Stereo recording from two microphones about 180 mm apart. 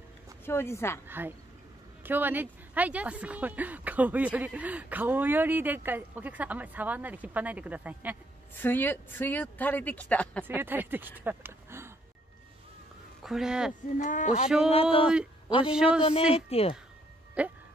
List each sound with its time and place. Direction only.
0.5 s speech: 15° left (ahead or behind)
1.0 s a woman's voice: 10° right (ahead or behind)
8.5 s speech: 10° left (ahead or behind)
10.4 s speech: 10° right (ahead or behind)
13.2 s speech: centre (ahead or behind)
13.9 s speech: 45° left (ahead or behind)
14.7 s speech: 30° left (ahead or behind)
17.4 s speech: 5° right (ahead or behind)